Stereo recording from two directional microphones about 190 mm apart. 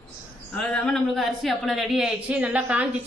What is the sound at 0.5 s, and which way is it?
Speech, 5° left (ahead or behind).